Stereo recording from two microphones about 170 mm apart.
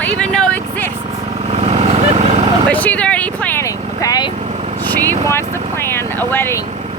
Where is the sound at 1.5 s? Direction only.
40° right (ahead or behind).